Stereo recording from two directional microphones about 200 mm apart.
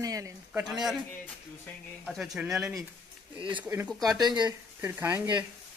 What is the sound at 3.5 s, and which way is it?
Speech, 10° right (ahead or behind).